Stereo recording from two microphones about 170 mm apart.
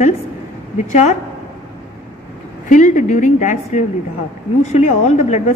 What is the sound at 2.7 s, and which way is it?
A woman's voice, 45° left (ahead or behind).